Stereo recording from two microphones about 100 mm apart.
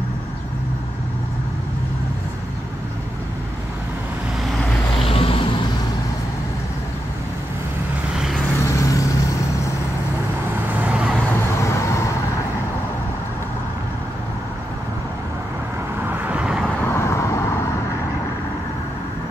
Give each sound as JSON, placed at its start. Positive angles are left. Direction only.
{"t": 5.0, "sound": "a sound", "side_deg": 70}
{"t": 8.6, "sound": "vehicle", "side_deg": 30}
{"t": 10.8, "sound": "vehicle", "side_deg": -15}
{"t": 11.3, "sound": "vehicle", "side_deg": 30}
{"t": 16.0, "sound": "vehicle", "side_deg": -20}
{"t": 16.8, "sound": "vehicle", "side_deg": 25}